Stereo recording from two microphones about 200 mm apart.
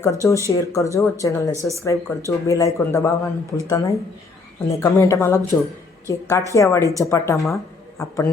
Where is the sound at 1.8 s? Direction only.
15° left (ahead or behind).